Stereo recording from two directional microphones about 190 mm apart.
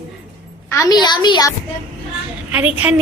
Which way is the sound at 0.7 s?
20° left (ahead or behind).